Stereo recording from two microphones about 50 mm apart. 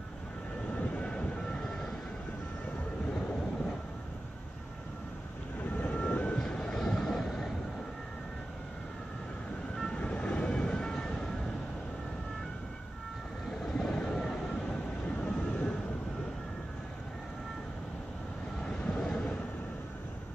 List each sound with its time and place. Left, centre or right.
0.7 s vehicle: left
5.8 s train: left; by 7.5 s centre
9.8 s vehicle: centre
13.7 s vehicle: centre
18.6 s vehicle: centre